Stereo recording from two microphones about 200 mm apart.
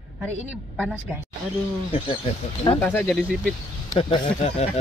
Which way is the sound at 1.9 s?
25° left (ahead or behind).